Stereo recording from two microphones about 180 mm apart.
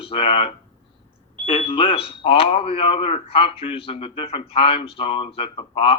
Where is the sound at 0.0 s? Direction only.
30° left (ahead or behind).